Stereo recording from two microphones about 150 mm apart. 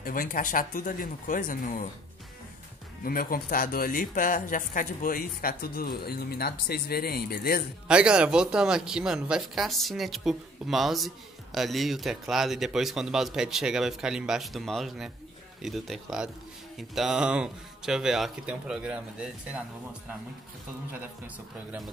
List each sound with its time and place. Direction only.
0.0 s speech: 70° left (ahead or behind)
3.0 s speech: 75° left (ahead or behind); by 7.6 s 90° left
7.9 s speech: 5° right (ahead or behind)